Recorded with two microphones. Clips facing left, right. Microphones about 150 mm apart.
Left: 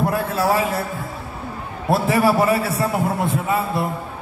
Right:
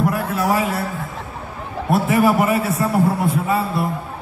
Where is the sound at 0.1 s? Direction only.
30° left (ahead or behind).